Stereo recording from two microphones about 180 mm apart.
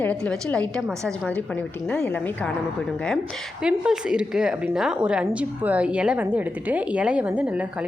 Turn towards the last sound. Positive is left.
turn(degrees=-5)  # may be behind; listen again after turning